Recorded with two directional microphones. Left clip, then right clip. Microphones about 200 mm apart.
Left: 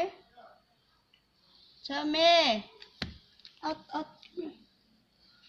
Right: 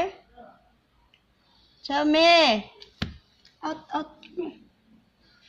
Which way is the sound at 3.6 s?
Centre (ahead or behind).